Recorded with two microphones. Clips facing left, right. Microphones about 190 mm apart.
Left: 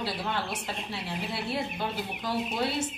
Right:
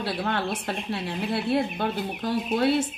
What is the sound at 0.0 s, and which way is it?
A woman's voice, 60° right (ahead or behind).